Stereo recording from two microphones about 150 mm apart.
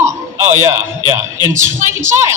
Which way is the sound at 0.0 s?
55° right (ahead or behind).